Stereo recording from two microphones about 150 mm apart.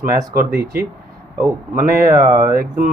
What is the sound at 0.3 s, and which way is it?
Speech, 90° right.